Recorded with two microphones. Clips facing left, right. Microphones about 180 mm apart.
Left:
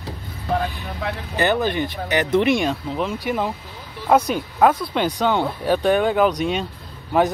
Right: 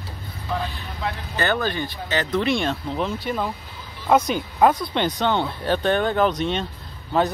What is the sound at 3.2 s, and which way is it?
Speech, 15° left (ahead or behind).